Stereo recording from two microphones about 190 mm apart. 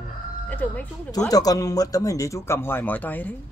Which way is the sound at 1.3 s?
20° left (ahead or behind).